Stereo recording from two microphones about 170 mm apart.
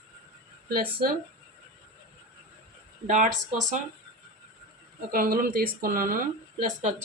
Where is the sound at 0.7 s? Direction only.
60° right (ahead or behind).